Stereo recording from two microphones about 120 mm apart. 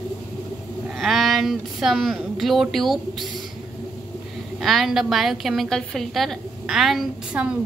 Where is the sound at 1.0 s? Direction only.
Centre (ahead or behind).